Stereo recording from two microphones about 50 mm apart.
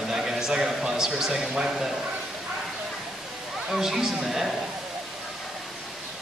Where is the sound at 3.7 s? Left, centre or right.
Centre.